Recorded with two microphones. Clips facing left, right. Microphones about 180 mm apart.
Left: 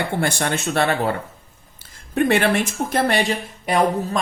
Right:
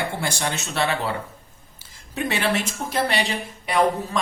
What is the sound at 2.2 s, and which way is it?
A man's voice, 55° left (ahead or behind).